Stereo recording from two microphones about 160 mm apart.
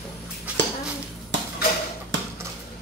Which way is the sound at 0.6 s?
90° right.